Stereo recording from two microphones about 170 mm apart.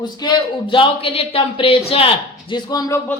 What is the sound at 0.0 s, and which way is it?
Speech, 25° left (ahead or behind).